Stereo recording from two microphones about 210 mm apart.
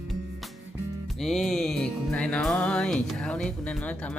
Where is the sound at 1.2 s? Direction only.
Centre (ahead or behind).